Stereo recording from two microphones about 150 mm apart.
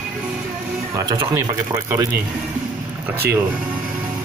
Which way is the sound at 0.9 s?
25° right (ahead or behind).